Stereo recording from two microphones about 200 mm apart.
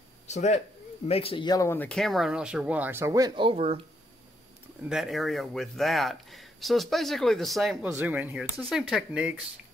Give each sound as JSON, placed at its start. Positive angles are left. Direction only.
{"t": 0.3, "sound": "speech", "side_deg": 35}
{"t": 4.8, "sound": "speech", "side_deg": 0}